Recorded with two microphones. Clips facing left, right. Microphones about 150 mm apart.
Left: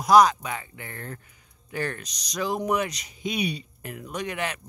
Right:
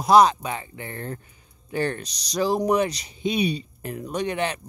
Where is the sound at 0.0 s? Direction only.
25° right (ahead or behind).